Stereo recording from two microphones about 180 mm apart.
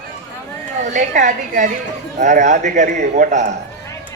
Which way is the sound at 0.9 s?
45° right (ahead or behind).